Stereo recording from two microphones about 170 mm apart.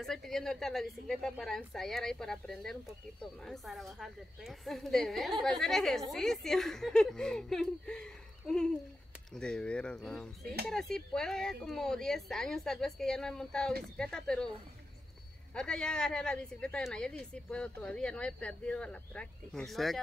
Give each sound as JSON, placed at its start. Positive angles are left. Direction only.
{"t": 0.0, "sound": "a woman's voice", "side_deg": 0}
{"t": 10.4, "sound": "speech", "side_deg": -70}
{"t": 10.7, "sound": "a woman's voice", "side_deg": 5}
{"t": 15.5, "sound": "a woman's voice", "side_deg": 5}